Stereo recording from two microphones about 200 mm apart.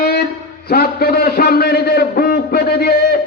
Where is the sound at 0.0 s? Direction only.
50° left (ahead or behind).